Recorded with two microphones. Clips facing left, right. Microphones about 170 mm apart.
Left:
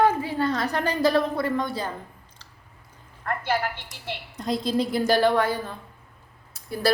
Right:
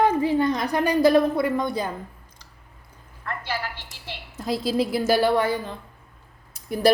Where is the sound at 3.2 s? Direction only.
50° left (ahead or behind).